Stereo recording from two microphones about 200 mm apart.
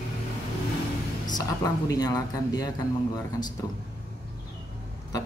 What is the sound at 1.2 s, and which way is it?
Speech, 20° left (ahead or behind).